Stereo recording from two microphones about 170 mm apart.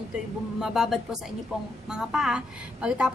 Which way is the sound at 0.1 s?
5° right (ahead or behind).